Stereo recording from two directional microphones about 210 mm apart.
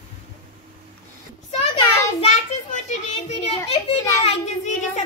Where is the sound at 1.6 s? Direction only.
25° left (ahead or behind).